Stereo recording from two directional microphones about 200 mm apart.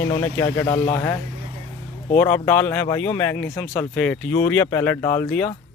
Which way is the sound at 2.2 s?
10° left (ahead or behind).